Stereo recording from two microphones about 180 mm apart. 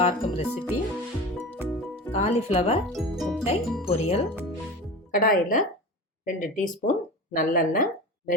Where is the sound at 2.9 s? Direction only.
Centre (ahead or behind).